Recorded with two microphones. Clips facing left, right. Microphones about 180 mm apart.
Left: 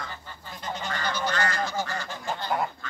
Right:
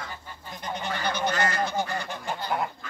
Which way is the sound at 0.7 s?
15° right (ahead or behind).